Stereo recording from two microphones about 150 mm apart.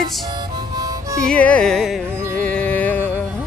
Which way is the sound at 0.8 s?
25° right (ahead or behind).